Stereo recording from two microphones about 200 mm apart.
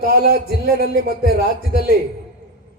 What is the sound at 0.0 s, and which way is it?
A man's voice, 50° right (ahead or behind).